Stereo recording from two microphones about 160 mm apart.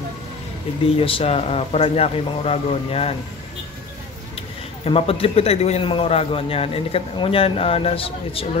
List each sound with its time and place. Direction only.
0.9 s a man's voice: 35° left (ahead or behind)
4.4 s a man's voice: 35° left (ahead or behind)